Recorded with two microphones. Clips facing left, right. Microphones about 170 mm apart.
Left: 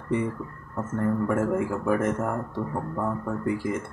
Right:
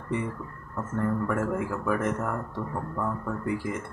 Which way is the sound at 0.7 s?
25° left (ahead or behind).